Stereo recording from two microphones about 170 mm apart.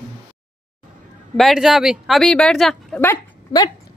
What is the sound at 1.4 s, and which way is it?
Speech, centre (ahead or behind).